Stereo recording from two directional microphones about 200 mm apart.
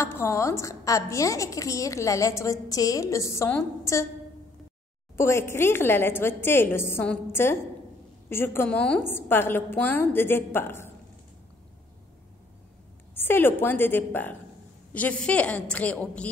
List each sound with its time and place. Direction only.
0.0 s a woman's voice: 15° left (ahead or behind)
5.1 s a woman's voice: 15° left (ahead or behind)
13.1 s a woman's voice: 10° left (ahead or behind)